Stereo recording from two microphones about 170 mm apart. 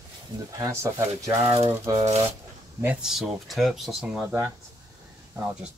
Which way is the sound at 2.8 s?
5° right (ahead or behind).